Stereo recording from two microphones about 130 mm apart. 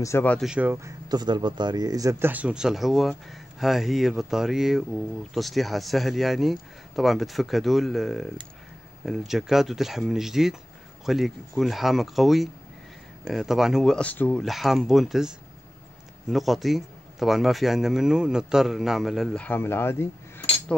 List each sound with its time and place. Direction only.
0.0 s speech: 20° left (ahead or behind)
0.4 s speech: 10° right (ahead or behind)
0.7 s speech: 25° right (ahead or behind); by 13.9 s 5° right (ahead or behind)
13.9 s speech: 10° left (ahead or behind)
14.4 s speech: centre (ahead or behind); by 20.4 s 20° left (ahead or behind)